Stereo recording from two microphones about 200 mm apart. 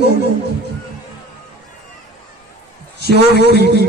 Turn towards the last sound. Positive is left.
turn(degrees=-55)  # may be behind; listen again after turning